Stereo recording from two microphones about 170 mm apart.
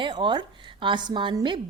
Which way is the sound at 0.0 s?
30° right (ahead or behind).